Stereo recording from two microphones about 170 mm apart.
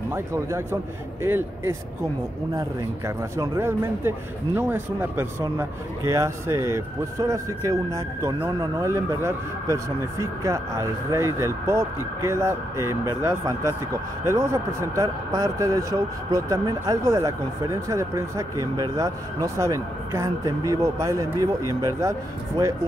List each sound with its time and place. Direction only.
0.1 s speech: 15° right (ahead or behind)
3.3 s speech: 15° right (ahead or behind)